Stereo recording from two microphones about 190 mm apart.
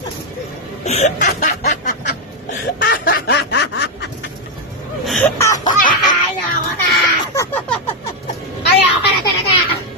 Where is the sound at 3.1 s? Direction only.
55° left (ahead or behind).